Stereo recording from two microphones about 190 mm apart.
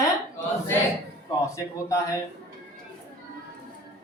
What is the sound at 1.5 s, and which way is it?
Speech, 15° left (ahead or behind).